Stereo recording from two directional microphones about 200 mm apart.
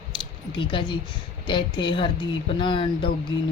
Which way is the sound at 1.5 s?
25° left (ahead or behind).